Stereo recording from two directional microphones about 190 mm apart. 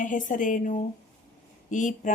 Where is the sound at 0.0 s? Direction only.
45° left (ahead or behind).